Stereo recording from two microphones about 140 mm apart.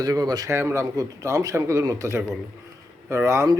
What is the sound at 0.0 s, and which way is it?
A man's voice, 25° right (ahead or behind).